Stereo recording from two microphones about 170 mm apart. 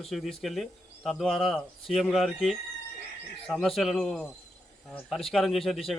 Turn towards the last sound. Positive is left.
turn(degrees=0)  # may be behind; listen again after turning